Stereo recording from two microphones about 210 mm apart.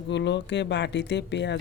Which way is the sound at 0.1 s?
55° left (ahead or behind).